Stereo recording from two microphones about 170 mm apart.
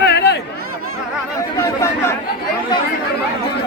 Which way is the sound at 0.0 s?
80° left.